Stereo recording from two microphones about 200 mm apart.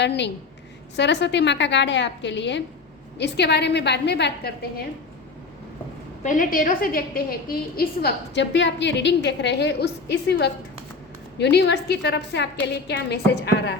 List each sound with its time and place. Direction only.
0.0 s a woman's voice: 60° left (ahead or behind)
6.2 s a woman's voice: 40° left (ahead or behind); by 13.7 s 55° left (ahead or behind)